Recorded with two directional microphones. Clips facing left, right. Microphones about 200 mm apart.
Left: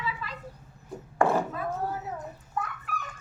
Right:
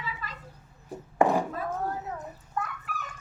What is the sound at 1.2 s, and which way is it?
Chopping, 20° right (ahead or behind).